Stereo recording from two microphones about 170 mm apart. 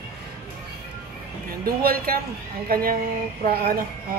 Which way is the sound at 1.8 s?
60° right (ahead or behind).